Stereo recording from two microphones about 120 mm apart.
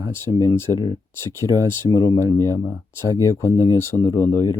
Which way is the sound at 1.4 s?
40° left (ahead or behind).